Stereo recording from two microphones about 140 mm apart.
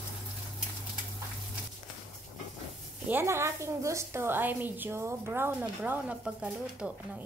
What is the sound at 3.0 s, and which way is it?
A woman's voice, 15° right (ahead or behind).